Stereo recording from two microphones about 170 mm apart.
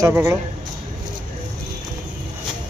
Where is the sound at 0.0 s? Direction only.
15° right (ahead or behind).